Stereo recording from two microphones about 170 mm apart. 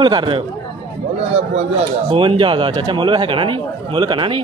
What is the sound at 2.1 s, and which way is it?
A man's voice, 30° right (ahead or behind).